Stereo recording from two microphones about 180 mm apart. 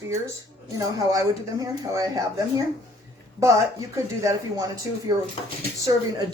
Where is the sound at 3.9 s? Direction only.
20° right (ahead or behind).